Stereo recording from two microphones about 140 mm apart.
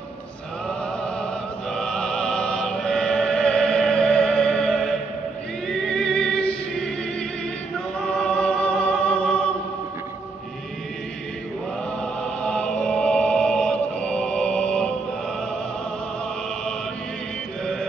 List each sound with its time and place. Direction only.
0.7 s opera: 5° left (ahead or behind)
5.9 s music: 5° left (ahead or behind)
8.1 s music: 5° left (ahead or behind)
12.0 s music: 5° left (ahead or behind)